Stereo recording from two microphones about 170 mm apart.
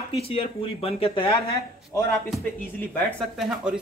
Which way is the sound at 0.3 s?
35° left (ahead or behind).